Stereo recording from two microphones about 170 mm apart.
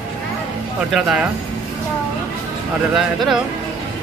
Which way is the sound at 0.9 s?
Centre (ahead or behind).